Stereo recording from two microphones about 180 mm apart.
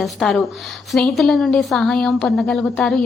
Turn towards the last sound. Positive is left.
turn(degrees=5)  # may be behind; listen again after turning